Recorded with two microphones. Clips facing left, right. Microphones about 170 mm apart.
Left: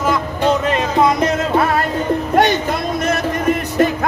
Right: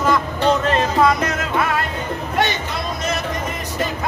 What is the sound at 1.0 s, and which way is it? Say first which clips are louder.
Music: left 3 dB; 25° left (ahead or behind).